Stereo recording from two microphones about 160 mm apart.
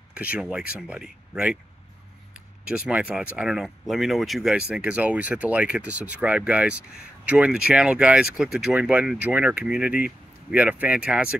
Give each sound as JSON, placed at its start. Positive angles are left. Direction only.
{"t": 0.1, "sound": "speech", "side_deg": -5}
{"t": 2.7, "sound": "speech", "side_deg": -5}